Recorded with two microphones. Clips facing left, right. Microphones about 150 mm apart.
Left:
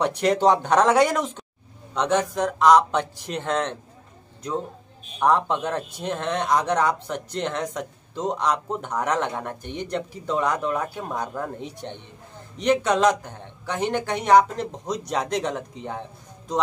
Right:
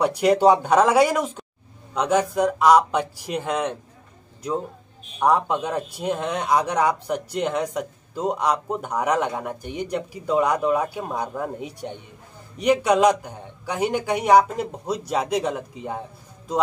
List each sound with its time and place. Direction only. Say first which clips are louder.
0.0 s speech: right 3 dB; 10° right (ahead or behind)
5.2 s speech: right 1 dB; 10° right (ahead or behind)